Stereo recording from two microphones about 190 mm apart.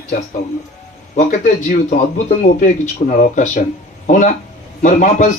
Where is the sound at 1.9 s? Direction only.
40° left (ahead or behind).